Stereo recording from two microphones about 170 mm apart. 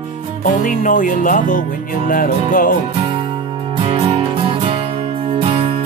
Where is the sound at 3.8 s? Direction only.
35° right (ahead or behind).